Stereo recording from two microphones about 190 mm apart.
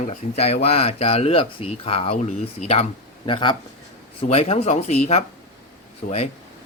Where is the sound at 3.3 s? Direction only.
25° left (ahead or behind).